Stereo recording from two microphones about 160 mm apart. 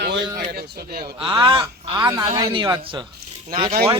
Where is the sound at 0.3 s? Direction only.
80° right.